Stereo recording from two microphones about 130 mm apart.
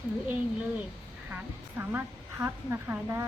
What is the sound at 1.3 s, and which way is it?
A woman's voice, 15° right (ahead or behind).